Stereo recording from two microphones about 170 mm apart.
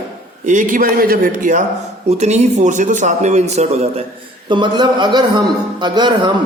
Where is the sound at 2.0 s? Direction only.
40° right (ahead or behind).